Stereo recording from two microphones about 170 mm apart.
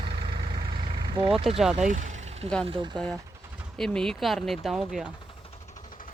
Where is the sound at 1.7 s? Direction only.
45° right (ahead or behind).